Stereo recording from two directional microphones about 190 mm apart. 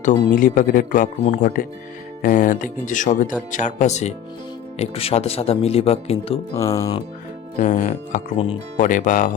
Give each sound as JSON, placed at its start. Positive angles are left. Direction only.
{"t": 0.3, "sound": "speech", "side_deg": 45}
{"t": 6.5, "sound": "speech", "side_deg": 15}
{"t": 7.6, "sound": "speech", "side_deg": 40}